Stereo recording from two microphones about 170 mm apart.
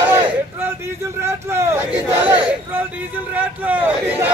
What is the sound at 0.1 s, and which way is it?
A man's voice, 15° right (ahead or behind).